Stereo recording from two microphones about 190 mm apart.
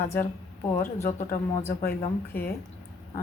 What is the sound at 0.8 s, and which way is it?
A woman's voice, 10° left (ahead or behind).